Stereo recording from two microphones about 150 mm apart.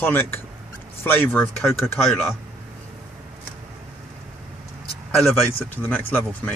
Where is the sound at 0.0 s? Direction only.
15° left (ahead or behind).